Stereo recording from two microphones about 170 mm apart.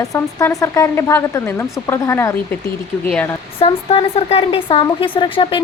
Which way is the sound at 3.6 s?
35° left (ahead or behind).